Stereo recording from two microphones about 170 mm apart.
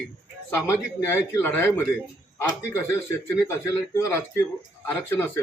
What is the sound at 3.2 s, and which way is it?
A man's voice, 15° left (ahead or behind).